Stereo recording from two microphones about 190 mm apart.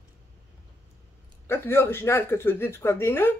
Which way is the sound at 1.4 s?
10° left (ahead or behind).